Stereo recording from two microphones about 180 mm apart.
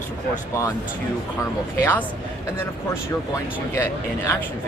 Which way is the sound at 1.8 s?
10° left (ahead or behind).